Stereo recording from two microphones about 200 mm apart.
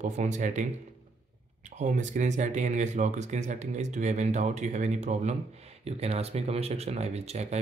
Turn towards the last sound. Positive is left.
turn(degrees=-35)  # may be behind; listen again after turning